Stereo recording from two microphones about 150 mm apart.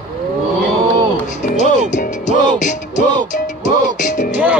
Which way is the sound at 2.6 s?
55° left (ahead or behind).